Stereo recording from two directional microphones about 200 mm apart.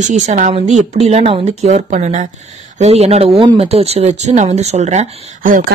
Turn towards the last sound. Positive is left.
turn(degrees=-40)  # may be behind; listen again after turning